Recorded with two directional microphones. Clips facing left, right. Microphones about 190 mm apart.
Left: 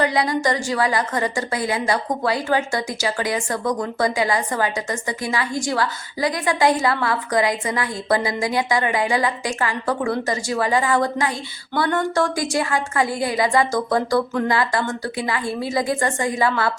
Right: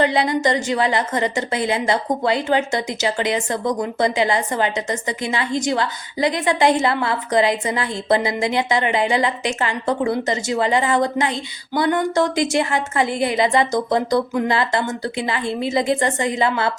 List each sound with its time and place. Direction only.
0.0 s a woman's voice: 25° right (ahead or behind)